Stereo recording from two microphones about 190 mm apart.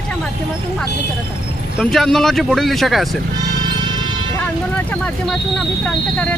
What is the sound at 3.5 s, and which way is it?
Music, 20° right (ahead or behind).